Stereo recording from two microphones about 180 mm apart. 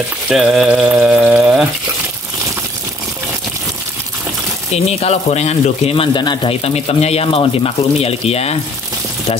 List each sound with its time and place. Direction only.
0.3 s speech: centre (ahead or behind)
4.7 s speech: 35° left (ahead or behind)